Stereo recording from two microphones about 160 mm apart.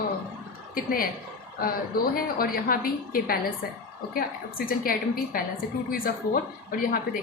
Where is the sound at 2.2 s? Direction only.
65° left (ahead or behind).